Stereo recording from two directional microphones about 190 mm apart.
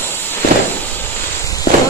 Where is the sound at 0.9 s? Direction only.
15° left (ahead or behind).